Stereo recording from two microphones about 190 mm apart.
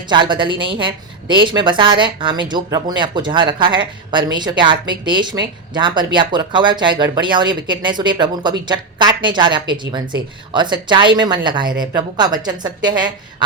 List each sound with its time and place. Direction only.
0.0 s a woman's voice: 25° right (ahead or behind)